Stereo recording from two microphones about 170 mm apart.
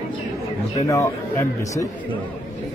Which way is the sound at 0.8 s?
20° left (ahead or behind).